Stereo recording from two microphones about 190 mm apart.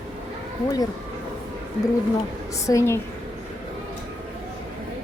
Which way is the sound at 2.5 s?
15° left (ahead or behind).